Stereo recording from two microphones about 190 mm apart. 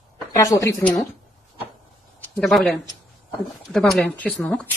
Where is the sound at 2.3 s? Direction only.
Centre (ahead or behind).